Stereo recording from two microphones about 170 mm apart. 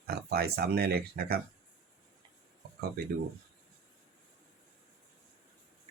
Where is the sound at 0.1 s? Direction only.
70° right (ahead or behind).